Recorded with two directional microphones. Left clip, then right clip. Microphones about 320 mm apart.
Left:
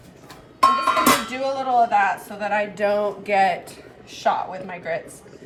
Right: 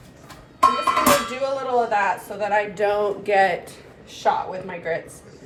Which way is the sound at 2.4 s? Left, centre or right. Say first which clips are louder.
Right 1 dB; centre.